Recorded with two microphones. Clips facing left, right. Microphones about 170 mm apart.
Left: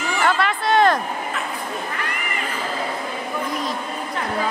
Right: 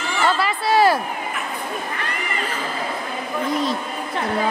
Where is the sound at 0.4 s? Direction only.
5° right (ahead or behind).